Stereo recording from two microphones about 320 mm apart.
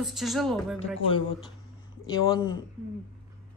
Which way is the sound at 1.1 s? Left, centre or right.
Centre.